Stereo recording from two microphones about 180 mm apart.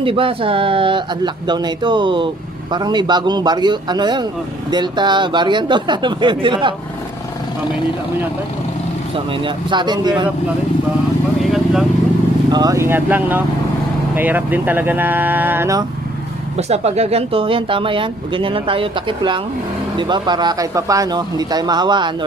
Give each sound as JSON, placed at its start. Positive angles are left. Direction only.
{"t": 0.0, "sound": "a man's voice", "side_deg": -30}
{"t": 9.1, "sound": "a man's voice", "side_deg": -25}
{"t": 11.4, "sound": "vehicle", "side_deg": 0}
{"t": 12.4, "sound": "speech", "side_deg": -20}
{"t": 16.5, "sound": "a man's voice", "side_deg": -35}